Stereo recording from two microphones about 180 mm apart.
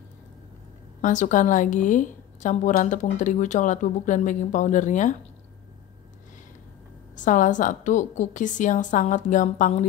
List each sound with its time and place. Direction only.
1.0 s a woman's voice: 45° left (ahead or behind)
7.2 s a woman's voice: 45° left (ahead or behind)